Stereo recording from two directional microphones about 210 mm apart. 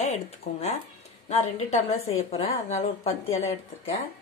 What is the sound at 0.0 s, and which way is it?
Speech, 30° left (ahead or behind).